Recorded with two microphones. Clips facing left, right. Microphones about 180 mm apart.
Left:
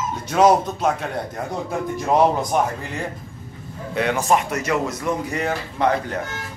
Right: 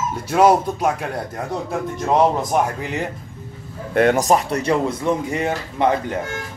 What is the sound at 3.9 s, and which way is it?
Speech, 50° right (ahead or behind).